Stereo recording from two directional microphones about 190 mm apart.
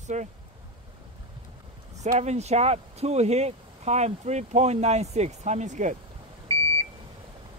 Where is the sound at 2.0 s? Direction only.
35° right (ahead or behind).